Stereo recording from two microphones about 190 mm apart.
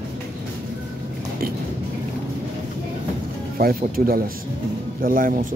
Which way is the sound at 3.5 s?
50° right (ahead or behind).